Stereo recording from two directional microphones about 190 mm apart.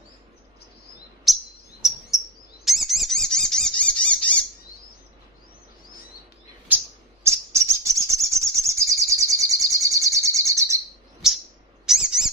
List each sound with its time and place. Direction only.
1.2 s chirp: centre (ahead or behind)
7.2 s bird: 15° right (ahead or behind)
11.2 s bird: 5° right (ahead or behind)
11.8 s owl: 5° right (ahead or behind)